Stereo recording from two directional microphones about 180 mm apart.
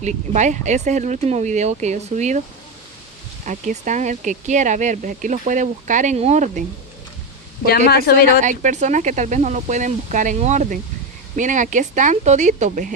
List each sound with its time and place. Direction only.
0.0 s speech: 40° right (ahead or behind)
3.4 s speech: 45° right (ahead or behind)
7.9 s speech: 60° left (ahead or behind)
8.4 s speech: 45° right (ahead or behind)